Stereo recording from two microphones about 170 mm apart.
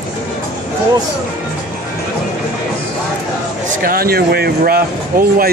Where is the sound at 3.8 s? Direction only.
60° right (ahead or behind).